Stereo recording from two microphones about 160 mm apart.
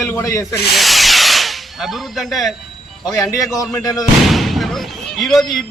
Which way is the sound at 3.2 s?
20° left (ahead or behind).